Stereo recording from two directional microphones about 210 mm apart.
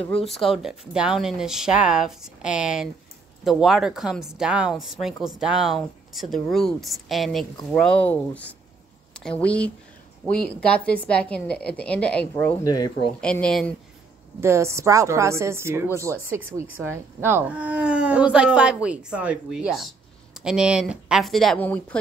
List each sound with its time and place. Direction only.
0.1 s speech: centre (ahead or behind)
12.7 s speech: 20° left (ahead or behind)
13.2 s speech: 5° left (ahead or behind)
14.4 s a woman's voice: 15° right (ahead or behind); by 21.9 s 5° left (ahead or behind)